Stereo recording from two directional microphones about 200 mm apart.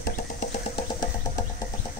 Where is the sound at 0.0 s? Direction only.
40° left (ahead or behind).